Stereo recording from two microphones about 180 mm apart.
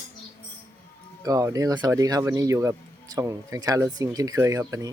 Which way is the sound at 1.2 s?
20° right (ahead or behind).